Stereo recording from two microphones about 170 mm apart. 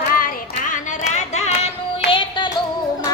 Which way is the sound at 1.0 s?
40° left (ahead or behind).